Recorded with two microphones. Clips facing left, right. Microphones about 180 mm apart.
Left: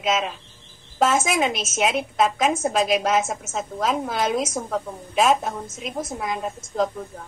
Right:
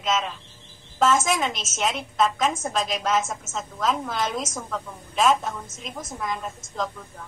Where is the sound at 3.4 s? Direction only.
55° left (ahead or behind).